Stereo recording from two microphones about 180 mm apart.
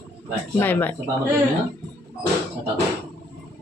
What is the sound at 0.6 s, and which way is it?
Speech, 10° left (ahead or behind).